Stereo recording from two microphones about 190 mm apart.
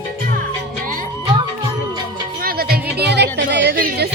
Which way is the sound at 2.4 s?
50° right (ahead or behind).